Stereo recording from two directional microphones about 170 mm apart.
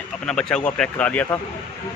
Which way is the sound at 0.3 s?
5° left (ahead or behind).